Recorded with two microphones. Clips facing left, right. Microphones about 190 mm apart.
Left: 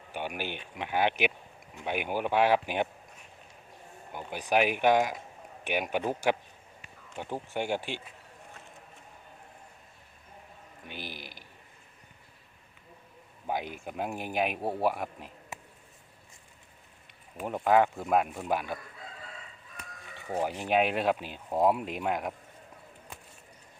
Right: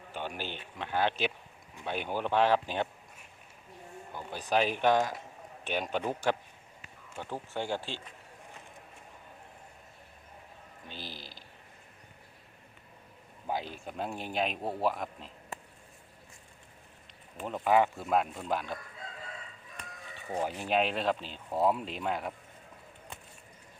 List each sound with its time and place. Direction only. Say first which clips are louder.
0.1 s speech: left 3 dB; 15° left (ahead or behind)
4.1 s speech: left 2 dB; 15° left (ahead or behind)
10.8 s a man's voice: left 3 dB; 15° left (ahead or behind)
13.5 s speech: left 2 dB; 15° left (ahead or behind)
17.3 s speech: left 2 dB; 10° left (ahead or behind)
20.3 s speech: left 2 dB; 15° left (ahead or behind)